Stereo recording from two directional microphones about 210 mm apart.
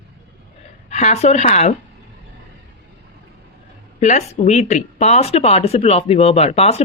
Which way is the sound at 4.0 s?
35° left (ahead or behind).